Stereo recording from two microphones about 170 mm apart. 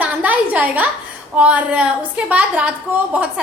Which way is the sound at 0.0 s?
10° right (ahead or behind).